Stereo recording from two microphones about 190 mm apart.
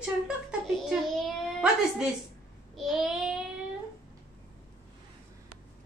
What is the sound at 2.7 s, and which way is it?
Child singing, centre (ahead or behind).